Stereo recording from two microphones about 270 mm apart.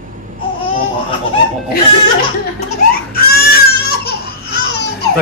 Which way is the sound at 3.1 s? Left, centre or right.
Left.